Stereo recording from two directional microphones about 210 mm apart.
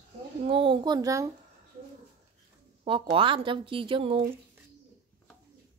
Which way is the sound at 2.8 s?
25° right (ahead or behind).